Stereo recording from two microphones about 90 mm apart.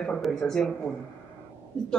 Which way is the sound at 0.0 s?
10° left (ahead or behind).